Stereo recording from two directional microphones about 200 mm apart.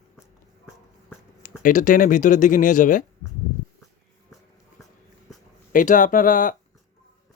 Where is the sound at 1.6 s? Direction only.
40° left (ahead or behind).